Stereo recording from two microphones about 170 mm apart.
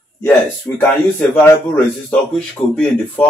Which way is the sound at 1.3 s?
10° left (ahead or behind).